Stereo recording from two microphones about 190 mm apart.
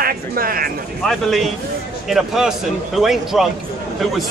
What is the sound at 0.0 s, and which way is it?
Speech, 50° right (ahead or behind).